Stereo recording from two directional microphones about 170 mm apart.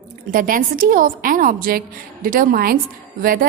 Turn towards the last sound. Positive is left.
turn(degrees=-60)  # may be behind; listen again after turning